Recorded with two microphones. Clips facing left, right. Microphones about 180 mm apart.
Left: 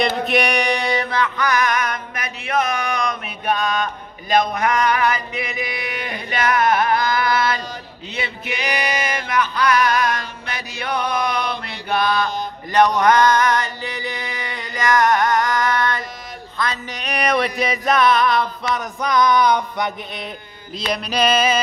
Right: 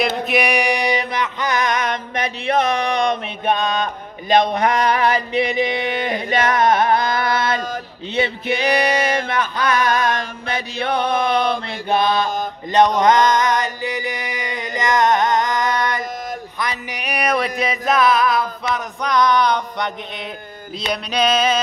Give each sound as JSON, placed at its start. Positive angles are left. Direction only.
{"t": 0.2, "sound": "a sound", "side_deg": -5}
{"t": 12.7, "sound": "mantra", "side_deg": -20}
{"t": 16.5, "sound": "music", "side_deg": -15}
{"t": 20.9, "sound": "music", "side_deg": 5}